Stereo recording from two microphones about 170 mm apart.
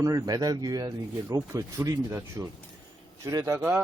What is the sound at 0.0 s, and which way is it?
Speech, 20° right (ahead or behind).